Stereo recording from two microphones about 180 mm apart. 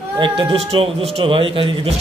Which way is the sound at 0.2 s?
30° right (ahead or behind).